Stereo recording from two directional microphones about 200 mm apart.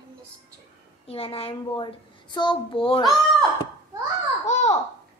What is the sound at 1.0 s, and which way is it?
A child's voice, 30° left (ahead or behind).